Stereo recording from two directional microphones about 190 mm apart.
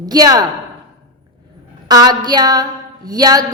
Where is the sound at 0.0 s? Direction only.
20° right (ahead or behind).